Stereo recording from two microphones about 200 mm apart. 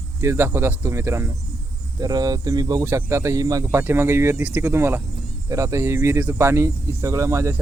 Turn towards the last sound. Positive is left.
turn(degrees=-15)  # may be behind; listen again after turning